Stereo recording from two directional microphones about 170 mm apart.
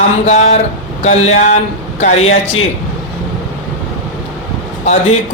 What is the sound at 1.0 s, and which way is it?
Speech, 40° left (ahead or behind).